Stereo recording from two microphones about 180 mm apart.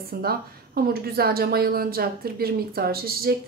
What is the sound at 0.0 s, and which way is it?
Speech, 55° right (ahead or behind).